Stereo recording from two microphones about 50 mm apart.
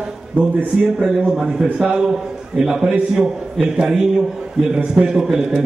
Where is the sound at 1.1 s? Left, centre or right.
Centre.